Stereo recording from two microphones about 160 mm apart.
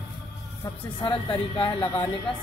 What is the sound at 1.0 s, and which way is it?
Speech, 30° left (ahead or behind).